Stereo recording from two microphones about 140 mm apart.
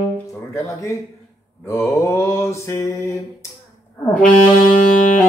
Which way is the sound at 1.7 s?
20° left (ahead or behind).